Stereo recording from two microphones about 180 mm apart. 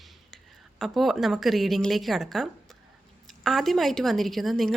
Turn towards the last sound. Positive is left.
turn(degrees=0)  # may be behind; listen again after turning